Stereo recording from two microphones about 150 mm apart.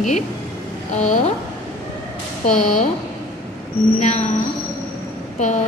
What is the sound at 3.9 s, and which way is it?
Speech, 50° left (ahead or behind).